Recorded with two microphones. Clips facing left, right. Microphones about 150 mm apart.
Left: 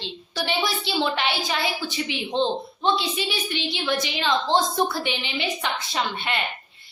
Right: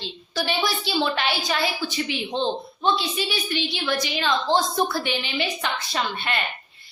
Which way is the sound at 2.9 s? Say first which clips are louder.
Even; 20° left (ahead or behind).